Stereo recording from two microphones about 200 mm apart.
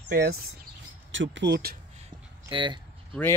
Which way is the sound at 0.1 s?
50° right (ahead or behind).